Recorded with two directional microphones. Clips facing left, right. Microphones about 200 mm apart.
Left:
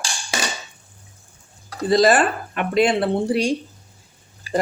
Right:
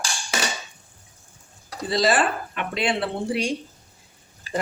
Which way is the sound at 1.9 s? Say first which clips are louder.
Left 5 dB; 45° left (ahead or behind).